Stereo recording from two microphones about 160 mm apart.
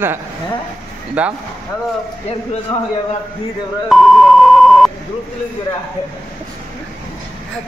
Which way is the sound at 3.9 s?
Centre (ahead or behind).